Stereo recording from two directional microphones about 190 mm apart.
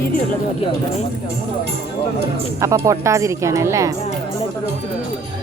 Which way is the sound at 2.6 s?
15° right (ahead or behind).